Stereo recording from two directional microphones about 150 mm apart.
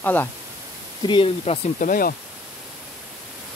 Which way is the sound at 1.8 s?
70° left (ahead or behind).